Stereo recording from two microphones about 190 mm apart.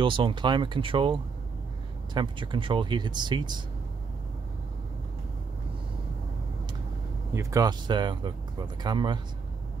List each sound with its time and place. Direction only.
0.0 s speech: 25° right (ahead or behind)
7.3 s speech: 20° right (ahead or behind)